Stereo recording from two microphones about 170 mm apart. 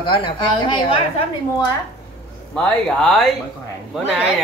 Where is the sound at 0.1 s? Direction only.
30° left (ahead or behind).